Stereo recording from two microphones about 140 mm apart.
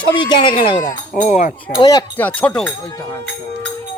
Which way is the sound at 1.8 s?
30° left (ahead or behind).